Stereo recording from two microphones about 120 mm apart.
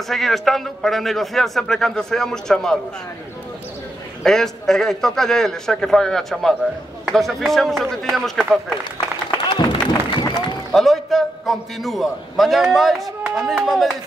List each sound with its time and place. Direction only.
0.1 s a man's voice: centre (ahead or behind)
4.2 s a man's voice: 5° left (ahead or behind)
9.5 s applause: 40° left (ahead or behind)
10.7 s a man's voice: centre (ahead or behind)